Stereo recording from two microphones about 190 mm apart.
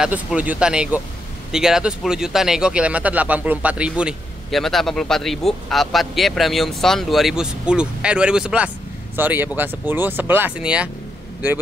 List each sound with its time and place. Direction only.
0.0 s speech: 5° right (ahead or behind)